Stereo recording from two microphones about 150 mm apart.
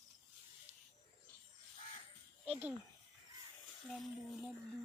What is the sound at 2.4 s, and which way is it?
Speech, 10° right (ahead or behind).